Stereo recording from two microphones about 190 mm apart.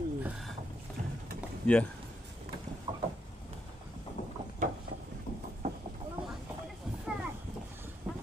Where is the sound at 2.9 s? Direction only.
35° right (ahead or behind).